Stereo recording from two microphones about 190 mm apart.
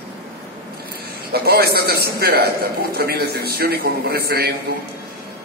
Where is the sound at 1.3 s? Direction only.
55° right (ahead or behind).